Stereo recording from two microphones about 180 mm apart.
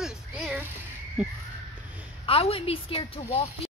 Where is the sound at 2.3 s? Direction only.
30° left (ahead or behind).